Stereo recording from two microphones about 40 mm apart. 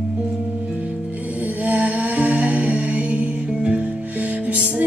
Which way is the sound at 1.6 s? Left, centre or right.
Right.